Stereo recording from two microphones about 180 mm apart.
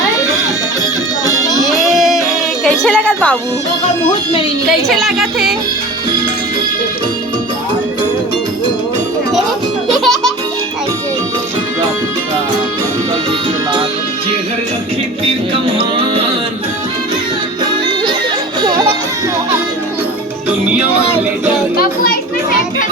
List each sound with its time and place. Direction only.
1.6 s music: centre (ahead or behind)
4.9 s speech: centre (ahead or behind)
9.9 s music: centre (ahead or behind)
21.8 s children playing: 55° left (ahead or behind)